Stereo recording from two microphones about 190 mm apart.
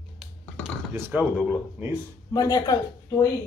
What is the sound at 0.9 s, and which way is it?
Speech, 10° right (ahead or behind).